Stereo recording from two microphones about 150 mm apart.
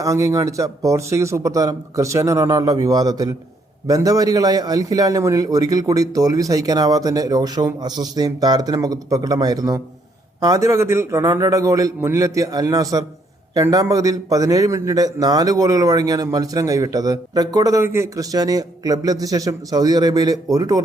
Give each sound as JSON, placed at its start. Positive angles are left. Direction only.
{"t": 0.0, "sound": "a man's voice", "side_deg": -20}